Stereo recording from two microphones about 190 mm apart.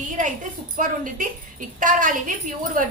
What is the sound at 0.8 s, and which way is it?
A woman's voice, 45° right (ahead or behind).